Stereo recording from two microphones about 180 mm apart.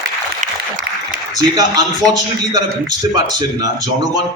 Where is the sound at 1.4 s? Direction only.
20° right (ahead or behind).